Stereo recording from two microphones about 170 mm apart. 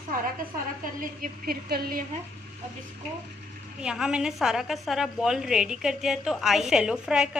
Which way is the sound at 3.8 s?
5° right (ahead or behind).